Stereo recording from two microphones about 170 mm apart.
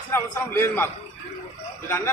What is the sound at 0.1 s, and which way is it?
Speech, 15° left (ahead or behind).